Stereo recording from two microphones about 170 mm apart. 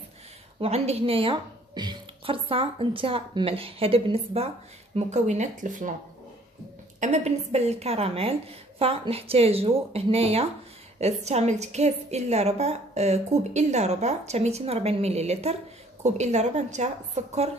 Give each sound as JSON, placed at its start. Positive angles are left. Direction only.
{"t": 0.6, "sound": "a woman's voice", "side_deg": -40}
{"t": 7.0, "sound": "a woman's voice", "side_deg": -40}